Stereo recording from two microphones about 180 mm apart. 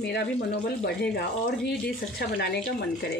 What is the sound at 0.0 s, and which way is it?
Speech, 65° left (ahead or behind).